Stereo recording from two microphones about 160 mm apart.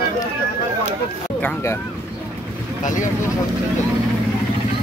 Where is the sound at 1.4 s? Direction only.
15° left (ahead or behind).